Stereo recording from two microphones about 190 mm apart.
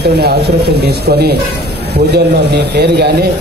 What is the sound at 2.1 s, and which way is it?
Speech, 60° right (ahead or behind).